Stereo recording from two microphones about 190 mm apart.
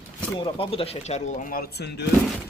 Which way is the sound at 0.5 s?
30° left (ahead or behind).